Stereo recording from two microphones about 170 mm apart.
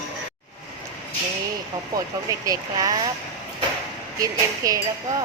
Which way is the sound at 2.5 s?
20° right (ahead or behind).